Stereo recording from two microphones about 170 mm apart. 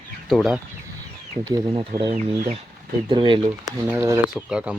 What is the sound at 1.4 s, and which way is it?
Speech, 25° right (ahead or behind).